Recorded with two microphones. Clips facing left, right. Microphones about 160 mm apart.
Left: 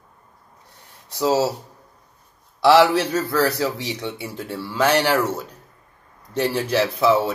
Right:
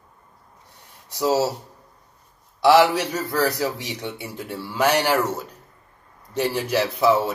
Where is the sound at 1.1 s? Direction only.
20° left (ahead or behind).